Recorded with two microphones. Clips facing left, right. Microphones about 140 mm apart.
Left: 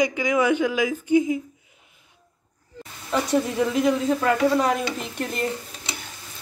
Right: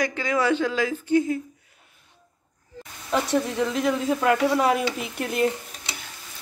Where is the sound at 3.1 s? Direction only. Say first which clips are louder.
Left 1 dB; 5° left (ahead or behind).